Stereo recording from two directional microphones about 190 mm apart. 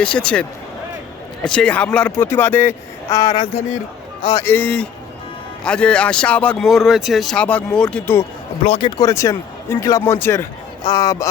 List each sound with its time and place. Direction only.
0.0 s speech: 5° left (ahead or behind)
1.5 s a man's voice: 5° left (ahead or behind); by 4.4 s 20° left (ahead or behind)
4.4 s speech: 10° left (ahead or behind)
8.6 s speech: 30° left (ahead or behind)